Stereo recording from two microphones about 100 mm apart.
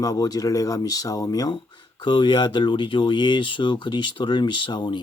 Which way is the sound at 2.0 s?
50° left (ahead or behind).